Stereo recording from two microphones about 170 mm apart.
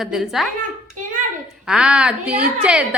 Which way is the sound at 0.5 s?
50° right (ahead or behind).